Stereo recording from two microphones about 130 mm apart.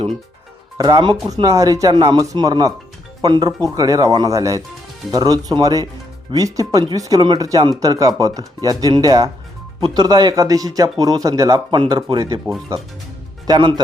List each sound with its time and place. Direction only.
0.8 s speech: 30° right (ahead or behind)
12.2 s speech: 25° right (ahead or behind)
13.5 s speech: 35° right (ahead or behind)